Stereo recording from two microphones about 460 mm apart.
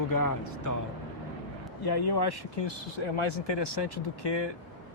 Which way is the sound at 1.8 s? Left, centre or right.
Left.